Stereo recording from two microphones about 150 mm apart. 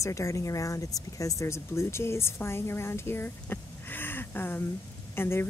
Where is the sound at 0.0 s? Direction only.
20° left (ahead or behind).